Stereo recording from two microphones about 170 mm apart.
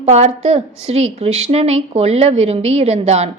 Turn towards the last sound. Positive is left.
turn(degrees=-40)  # may be behind; listen again after turning